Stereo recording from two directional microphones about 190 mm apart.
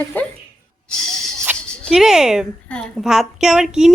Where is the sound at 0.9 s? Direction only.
Centre (ahead or behind).